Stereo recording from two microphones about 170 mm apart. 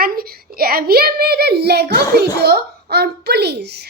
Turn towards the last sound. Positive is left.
turn(degrees=-75)  # may be behind; listen again after turning